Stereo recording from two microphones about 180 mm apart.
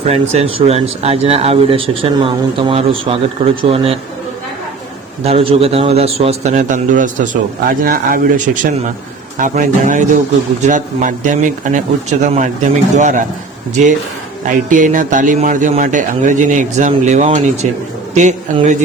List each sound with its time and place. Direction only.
0.1 s speech: 35° right (ahead or behind)
5.2 s speech: 30° right (ahead or behind)